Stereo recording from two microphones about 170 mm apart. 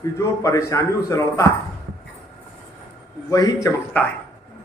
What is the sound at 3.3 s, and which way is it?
Speech, 20° left (ahead or behind).